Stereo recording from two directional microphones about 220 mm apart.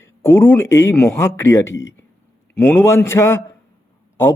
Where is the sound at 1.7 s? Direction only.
55° left (ahead or behind).